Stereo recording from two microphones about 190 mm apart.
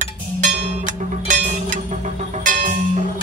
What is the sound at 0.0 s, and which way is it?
Music, 40° right (ahead or behind).